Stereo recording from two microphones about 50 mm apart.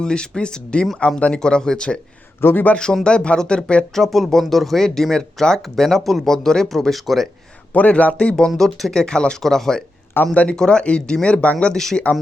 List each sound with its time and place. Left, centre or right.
0.0 s speech: centre
2.4 s a man's voice: left
2.7 s speech: centre
3.9 s speech: centre
7.7 s speech: left
8.4 s speech: centre
10.2 s a man's voice: left
10.5 s speech: centre
11.6 s speech: centre